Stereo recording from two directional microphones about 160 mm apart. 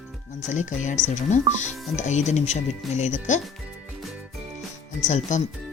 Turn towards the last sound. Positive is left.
turn(degrees=50)  # may be behind; listen again after turning